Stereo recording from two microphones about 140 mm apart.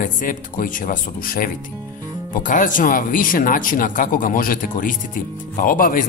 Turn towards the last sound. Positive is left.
turn(degrees=75)  # may be behind; listen again after turning